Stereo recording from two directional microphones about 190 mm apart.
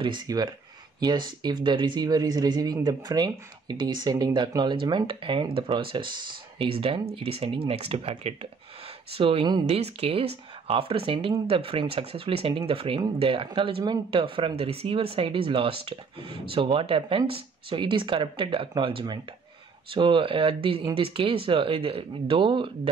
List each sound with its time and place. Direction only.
0.0 s speech: 20° right (ahead or behind)